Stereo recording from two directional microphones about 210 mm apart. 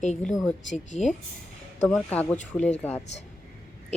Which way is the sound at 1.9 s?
5° left (ahead or behind).